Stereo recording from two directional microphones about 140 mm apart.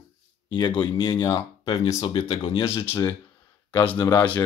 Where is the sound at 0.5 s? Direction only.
35° left (ahead or behind).